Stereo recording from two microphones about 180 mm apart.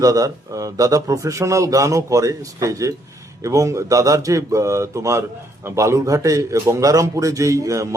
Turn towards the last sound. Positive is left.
turn(degrees=-15)  # may be behind; listen again after turning